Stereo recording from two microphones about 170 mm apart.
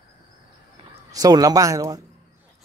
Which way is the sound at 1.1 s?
20° right (ahead or behind).